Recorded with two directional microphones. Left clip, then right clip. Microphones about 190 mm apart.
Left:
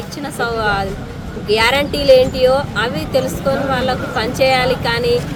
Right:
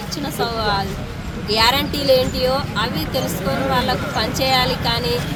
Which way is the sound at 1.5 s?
5° left (ahead or behind).